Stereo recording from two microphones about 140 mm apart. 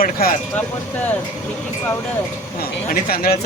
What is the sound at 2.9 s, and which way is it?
Speech, 90° left.